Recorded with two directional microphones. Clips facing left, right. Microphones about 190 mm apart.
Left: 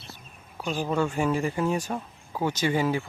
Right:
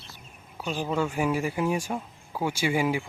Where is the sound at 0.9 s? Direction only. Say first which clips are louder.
Left 1 dB; 10° right (ahead or behind).